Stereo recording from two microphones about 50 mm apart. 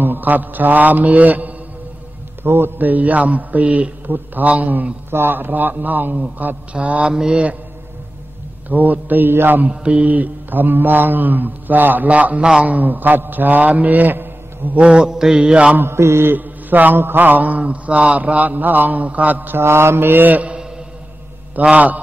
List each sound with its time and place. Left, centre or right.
0.0 s mantra: right
2.4 s mantra: right
5.1 s mantra: right
7.2 s mantra: centre
8.6 s mantra: right
9.7 s mantra: right
14.8 s mantra: centre
15.8 s mantra: right
16.3 s mantra: right
19.5 s mantra: right
21.6 s mantra: right